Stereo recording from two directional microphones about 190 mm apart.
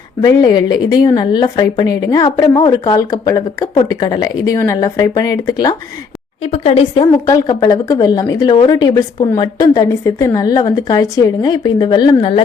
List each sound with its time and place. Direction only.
0.2 s a woman's voice: 20° left (ahead or behind)
6.4 s a woman's voice: 35° left (ahead or behind)